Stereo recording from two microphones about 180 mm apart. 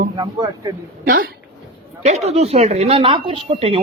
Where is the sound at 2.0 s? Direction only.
40° right (ahead or behind).